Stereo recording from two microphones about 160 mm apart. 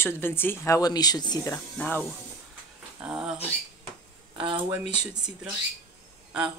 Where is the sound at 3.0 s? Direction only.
5° right (ahead or behind).